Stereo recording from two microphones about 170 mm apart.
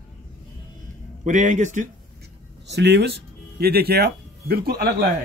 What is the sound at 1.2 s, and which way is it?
Speech, 45° right (ahead or behind).